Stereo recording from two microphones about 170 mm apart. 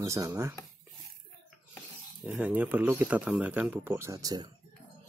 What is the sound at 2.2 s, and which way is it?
Speech, 10° right (ahead or behind).